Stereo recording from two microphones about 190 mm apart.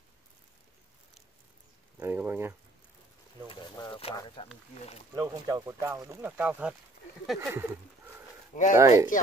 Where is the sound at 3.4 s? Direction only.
25° left (ahead or behind).